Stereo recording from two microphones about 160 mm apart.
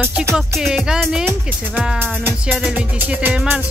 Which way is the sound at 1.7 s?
10° right (ahead or behind).